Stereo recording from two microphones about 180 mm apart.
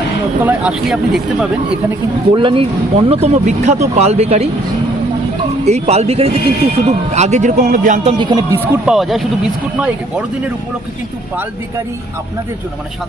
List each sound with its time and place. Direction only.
0.4 s speech: 5° right (ahead or behind)
2.3 s speech: 30° right (ahead or behind)
5.7 s speech: 35° right (ahead or behind)
8.2 s speech: 20° right (ahead or behind)
8.8 s speech: centre (ahead or behind)